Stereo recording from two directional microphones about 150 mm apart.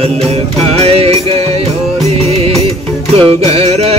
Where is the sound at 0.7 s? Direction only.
40° right (ahead or behind).